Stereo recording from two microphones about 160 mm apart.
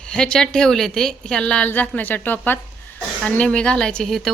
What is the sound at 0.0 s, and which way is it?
A woman's voice, 5° left (ahead or behind).